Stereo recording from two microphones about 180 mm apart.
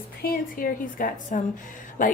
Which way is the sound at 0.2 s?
55° left (ahead or behind).